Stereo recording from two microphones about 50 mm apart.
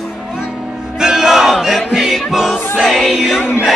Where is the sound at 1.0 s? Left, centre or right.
Centre.